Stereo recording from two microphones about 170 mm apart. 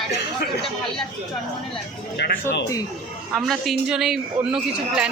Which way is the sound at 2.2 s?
80° left.